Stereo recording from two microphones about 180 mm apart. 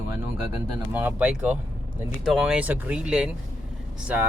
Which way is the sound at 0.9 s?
10° right (ahead or behind).